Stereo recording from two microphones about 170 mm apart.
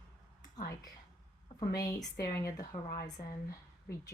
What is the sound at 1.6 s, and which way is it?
Speech, 20° left (ahead or behind).